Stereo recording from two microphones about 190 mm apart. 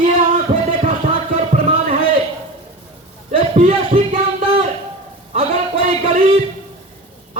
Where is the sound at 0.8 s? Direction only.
35° right (ahead or behind).